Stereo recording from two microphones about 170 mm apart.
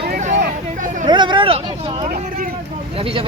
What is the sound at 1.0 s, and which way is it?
Speech, 30° right (ahead or behind).